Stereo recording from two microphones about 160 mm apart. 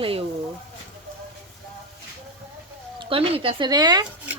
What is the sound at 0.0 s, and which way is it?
Speech, 35° right (ahead or behind).